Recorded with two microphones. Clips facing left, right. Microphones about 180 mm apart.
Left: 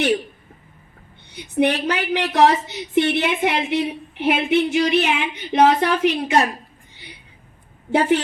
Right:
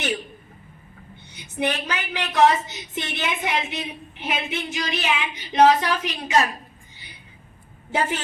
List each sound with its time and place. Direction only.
1.3 s a woman's voice: 60° left (ahead or behind)
7.9 s a woman's voice: 65° left (ahead or behind)